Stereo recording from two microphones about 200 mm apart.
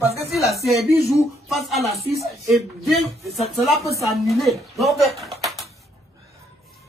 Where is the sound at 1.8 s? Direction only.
30° right (ahead or behind).